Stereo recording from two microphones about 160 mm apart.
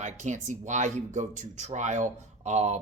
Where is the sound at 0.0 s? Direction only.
50° right (ahead or behind).